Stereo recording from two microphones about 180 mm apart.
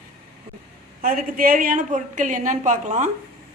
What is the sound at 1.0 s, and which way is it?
A woman's voice, 50° right (ahead or behind).